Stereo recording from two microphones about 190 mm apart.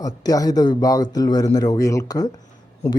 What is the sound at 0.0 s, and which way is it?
Speech, 20° left (ahead or behind).